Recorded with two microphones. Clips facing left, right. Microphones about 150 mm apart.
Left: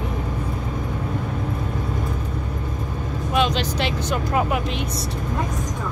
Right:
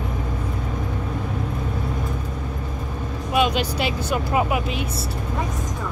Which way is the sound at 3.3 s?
10° right (ahead or behind).